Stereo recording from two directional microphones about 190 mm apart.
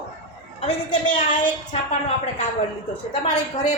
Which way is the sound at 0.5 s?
35° left (ahead or behind).